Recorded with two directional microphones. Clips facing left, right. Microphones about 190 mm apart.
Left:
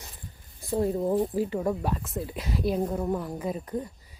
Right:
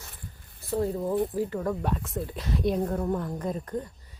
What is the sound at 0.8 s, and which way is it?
Speech, 20° left (ahead or behind).